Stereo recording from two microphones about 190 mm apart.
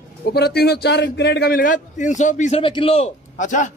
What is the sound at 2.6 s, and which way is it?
A man's voice, 25° left (ahead or behind).